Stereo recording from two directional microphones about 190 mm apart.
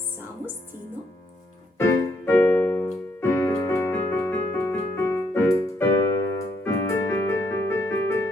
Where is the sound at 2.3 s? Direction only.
10° left (ahead or behind).